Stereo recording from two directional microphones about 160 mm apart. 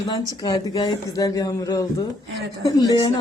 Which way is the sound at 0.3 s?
25° left (ahead or behind).